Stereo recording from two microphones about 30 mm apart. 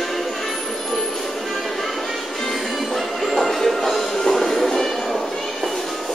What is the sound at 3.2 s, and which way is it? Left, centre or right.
Music, centre.